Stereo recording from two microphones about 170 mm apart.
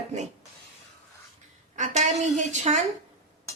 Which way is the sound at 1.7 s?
45° right (ahead or behind).